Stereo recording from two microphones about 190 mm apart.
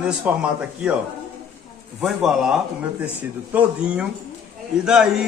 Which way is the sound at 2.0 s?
Centre (ahead or behind).